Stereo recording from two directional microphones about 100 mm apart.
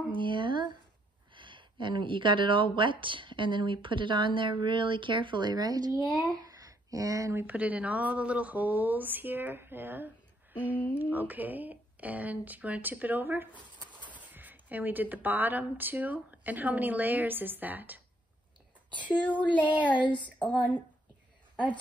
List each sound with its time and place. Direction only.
0.1 s speech: 55° right (ahead or behind)
6.0 s speech: 10° left (ahead or behind)
6.3 s speech: 35° right (ahead or behind)
7.4 s a woman's voice: 15° right (ahead or behind)
18.9 s speech: 15° left (ahead or behind)
20.4 s speech: 15° left (ahead or behind)